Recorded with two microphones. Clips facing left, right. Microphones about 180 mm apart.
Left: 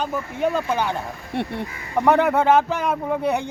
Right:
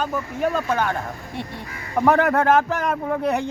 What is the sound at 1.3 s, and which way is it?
Speech, 65° left (ahead or behind).